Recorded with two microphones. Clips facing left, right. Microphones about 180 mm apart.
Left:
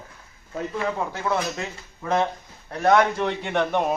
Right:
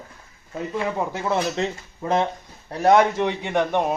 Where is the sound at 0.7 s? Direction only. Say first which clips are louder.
Right 3 dB; 20° right (ahead or behind).